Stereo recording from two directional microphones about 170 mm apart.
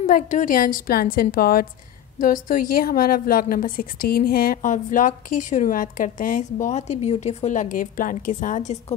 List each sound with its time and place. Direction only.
0.0 s a woman's voice: 50° left (ahead or behind)